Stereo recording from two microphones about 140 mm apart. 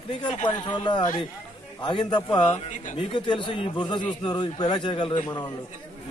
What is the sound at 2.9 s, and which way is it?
Speech, 35° left (ahead or behind).